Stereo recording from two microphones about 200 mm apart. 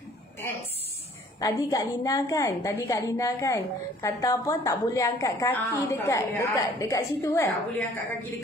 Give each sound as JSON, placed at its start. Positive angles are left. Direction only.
{"t": 1.4, "sound": "a woman's voice", "side_deg": 15}